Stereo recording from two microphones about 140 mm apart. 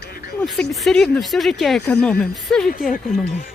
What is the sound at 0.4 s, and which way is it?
Speech, centre (ahead or behind).